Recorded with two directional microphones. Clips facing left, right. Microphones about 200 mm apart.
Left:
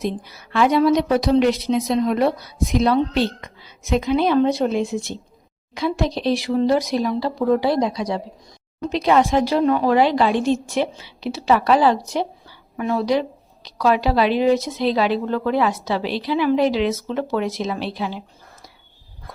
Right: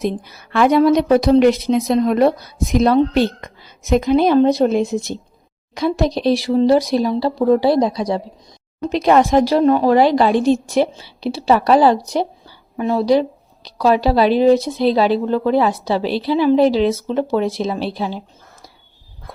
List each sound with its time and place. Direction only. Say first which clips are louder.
0.0 s a woman's voice: right 4 dB; 50° right (ahead or behind); by 8.2 s 35° right (ahead or behind)
8.9 s speech: right 4 dB; 45° right (ahead or behind)